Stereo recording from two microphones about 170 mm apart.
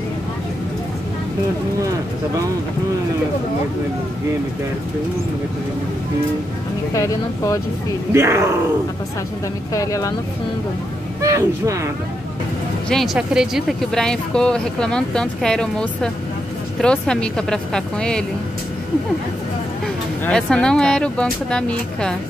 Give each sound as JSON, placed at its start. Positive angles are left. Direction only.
{"t": 6.9, "sound": "speech", "side_deg": 20}
{"t": 8.1, "sound": "speech", "side_deg": -15}
{"t": 9.8, "sound": "speech", "side_deg": 20}
{"t": 11.2, "sound": "speech", "side_deg": -20}
{"t": 12.9, "sound": "speech", "side_deg": 0}
{"t": 20.2, "sound": "speech", "side_deg": 5}